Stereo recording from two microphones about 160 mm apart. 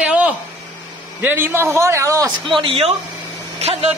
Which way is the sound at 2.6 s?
35° right (ahead or behind).